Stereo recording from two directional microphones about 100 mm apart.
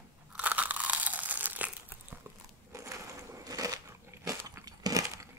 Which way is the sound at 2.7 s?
30° right (ahead or behind).